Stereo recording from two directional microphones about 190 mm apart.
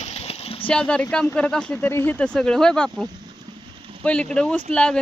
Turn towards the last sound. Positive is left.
turn(degrees=5)  # may be behind; listen again after turning